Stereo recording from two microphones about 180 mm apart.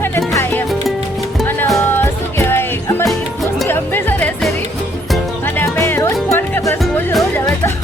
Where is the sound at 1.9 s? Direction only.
15° left (ahead or behind).